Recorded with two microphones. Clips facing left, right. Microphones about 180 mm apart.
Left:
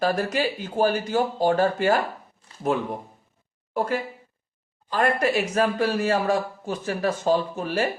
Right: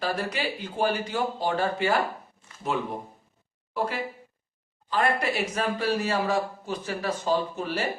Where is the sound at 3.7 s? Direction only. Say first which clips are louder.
Left 4 dB; 50° left (ahead or behind).